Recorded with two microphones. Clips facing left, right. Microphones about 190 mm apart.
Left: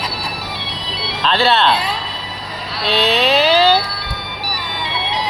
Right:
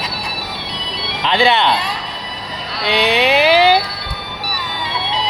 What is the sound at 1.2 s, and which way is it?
Speech, 15° right (ahead or behind).